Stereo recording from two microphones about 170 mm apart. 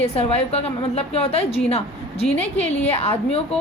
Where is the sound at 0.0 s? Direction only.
35° left (ahead or behind).